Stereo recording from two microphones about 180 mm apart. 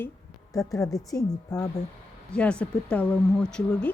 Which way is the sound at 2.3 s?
5° left (ahead or behind).